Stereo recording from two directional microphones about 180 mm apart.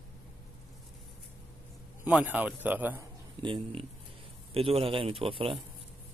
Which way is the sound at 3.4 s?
30° right (ahead or behind).